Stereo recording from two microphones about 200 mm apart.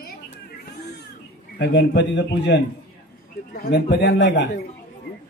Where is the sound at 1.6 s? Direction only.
60° left (ahead or behind).